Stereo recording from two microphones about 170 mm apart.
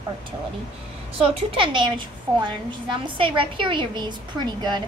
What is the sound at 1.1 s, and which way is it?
A woman's voice, 30° right (ahead or behind).